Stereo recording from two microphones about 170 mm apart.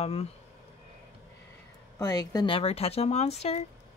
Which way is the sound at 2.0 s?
25° left (ahead or behind).